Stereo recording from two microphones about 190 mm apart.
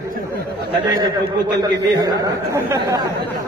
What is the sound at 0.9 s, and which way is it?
A man's voice, 20° right (ahead or behind).